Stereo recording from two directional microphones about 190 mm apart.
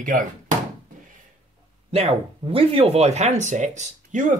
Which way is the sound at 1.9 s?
30° right (ahead or behind).